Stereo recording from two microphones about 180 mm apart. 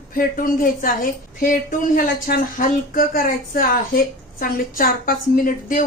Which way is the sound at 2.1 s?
50° left (ahead or behind).